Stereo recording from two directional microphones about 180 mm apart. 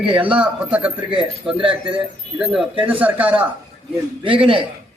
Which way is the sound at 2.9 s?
10° right (ahead or behind).